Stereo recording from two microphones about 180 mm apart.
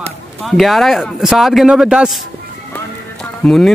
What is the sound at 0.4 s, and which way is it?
Speech, centre (ahead or behind).